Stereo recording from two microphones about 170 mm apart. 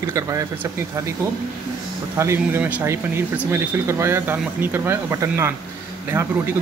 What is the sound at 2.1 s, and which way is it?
Speech, 15° right (ahead or behind).